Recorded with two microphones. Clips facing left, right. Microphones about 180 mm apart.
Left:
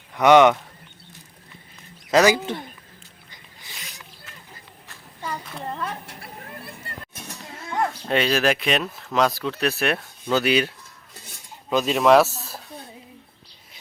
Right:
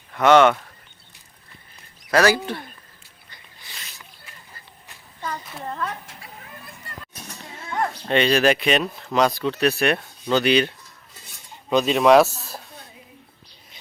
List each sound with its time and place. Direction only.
0.1 s speech: 15° left (ahead or behind)
2.0 s speech: 20° left (ahead or behind)
5.6 s a sound: 15° left (ahead or behind)
6.1 s vehicle: 65° left (ahead or behind)
8.0 s speech: centre (ahead or behind)